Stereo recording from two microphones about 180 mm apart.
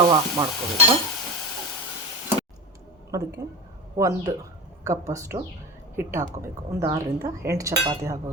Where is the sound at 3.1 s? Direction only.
20° right (ahead or behind).